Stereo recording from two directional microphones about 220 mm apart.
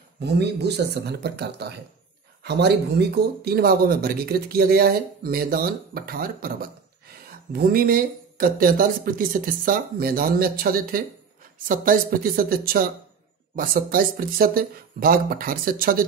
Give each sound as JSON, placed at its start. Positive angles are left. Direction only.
{"t": 0.2, "sound": "speech", "side_deg": -50}